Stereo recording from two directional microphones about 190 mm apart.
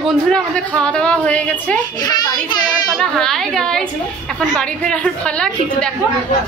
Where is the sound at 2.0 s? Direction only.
20° left (ahead or behind).